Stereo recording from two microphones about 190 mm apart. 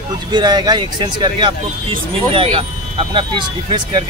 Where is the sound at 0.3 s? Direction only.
25° right (ahead or behind).